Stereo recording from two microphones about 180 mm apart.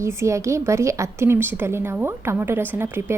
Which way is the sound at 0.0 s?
15° right (ahead or behind).